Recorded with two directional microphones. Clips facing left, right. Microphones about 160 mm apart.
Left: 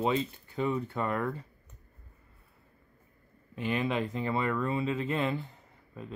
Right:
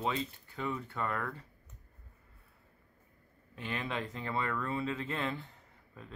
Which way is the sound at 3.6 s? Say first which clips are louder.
Left 7 dB; 15° left (ahead or behind).